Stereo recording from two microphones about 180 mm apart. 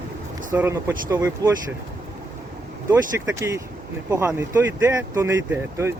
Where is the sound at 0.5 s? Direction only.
10° right (ahead or behind).